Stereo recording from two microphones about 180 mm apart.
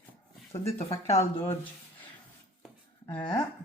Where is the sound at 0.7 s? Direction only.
35° left (ahead or behind).